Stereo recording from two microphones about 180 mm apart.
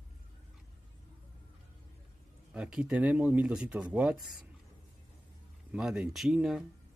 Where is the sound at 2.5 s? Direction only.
5° right (ahead or behind).